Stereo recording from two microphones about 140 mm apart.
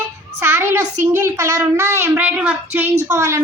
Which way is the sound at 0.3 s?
15° right (ahead or behind).